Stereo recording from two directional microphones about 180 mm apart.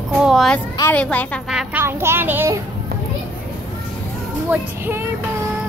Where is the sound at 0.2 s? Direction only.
Centre (ahead or behind).